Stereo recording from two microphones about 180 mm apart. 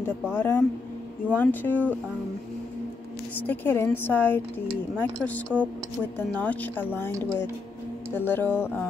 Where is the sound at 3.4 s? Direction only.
10° left (ahead or behind).